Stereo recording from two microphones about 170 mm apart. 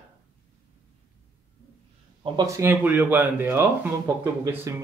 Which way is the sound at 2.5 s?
10° right (ahead or behind).